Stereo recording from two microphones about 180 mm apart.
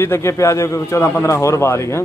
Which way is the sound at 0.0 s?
15° left (ahead or behind).